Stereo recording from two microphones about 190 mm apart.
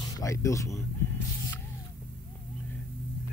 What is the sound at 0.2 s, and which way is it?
Speech, 15° left (ahead or behind).